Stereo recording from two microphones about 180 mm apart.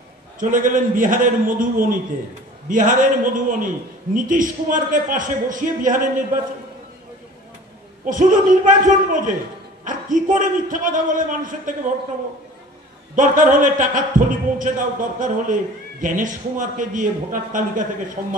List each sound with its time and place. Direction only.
0.4 s a man's voice: 45° right (ahead or behind)
8.0 s a man's voice: 45° right (ahead or behind)
13.1 s a man's voice: 45° right (ahead or behind)